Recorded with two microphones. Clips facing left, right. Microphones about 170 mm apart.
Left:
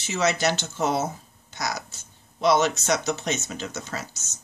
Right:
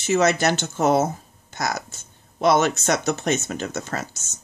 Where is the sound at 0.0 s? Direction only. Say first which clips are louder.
Right 5 dB; 50° right (ahead or behind).